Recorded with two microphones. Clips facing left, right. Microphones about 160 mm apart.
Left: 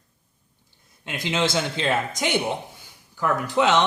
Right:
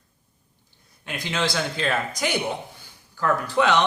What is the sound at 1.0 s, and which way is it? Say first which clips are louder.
Speech: left 2 dB; 20° left (ahead or behind).